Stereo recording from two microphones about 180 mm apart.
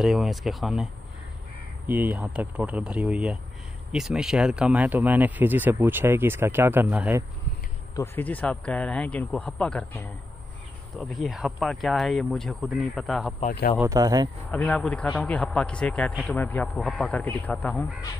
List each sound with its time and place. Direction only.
0.0 s speech: centre (ahead or behind)
1.9 s speech: 10° right (ahead or behind)
7.9 s speech: 15° left (ahead or behind)
13.8 s speech: 20° right (ahead or behind)
14.5 s speech: 5° left (ahead or behind)